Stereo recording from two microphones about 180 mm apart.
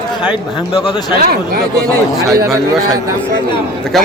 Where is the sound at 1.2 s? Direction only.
55° right (ahead or behind).